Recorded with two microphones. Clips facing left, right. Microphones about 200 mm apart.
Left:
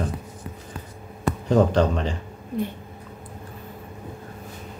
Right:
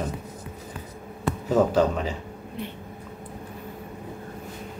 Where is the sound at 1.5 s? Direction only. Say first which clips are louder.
Left 1 dB; 5° right (ahead or behind).